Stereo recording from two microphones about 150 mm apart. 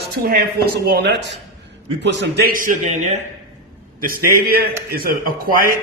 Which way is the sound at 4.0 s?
70° right (ahead or behind).